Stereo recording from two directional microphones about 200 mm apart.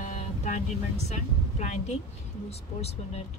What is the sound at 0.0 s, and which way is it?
Speech, 35° left (ahead or behind).